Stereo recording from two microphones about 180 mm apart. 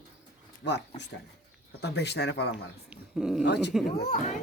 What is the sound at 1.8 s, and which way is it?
Speech, 70° left (ahead or behind).